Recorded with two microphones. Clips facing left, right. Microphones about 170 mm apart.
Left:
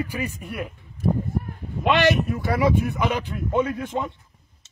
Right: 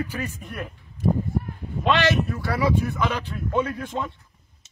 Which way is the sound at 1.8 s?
15° left (ahead or behind).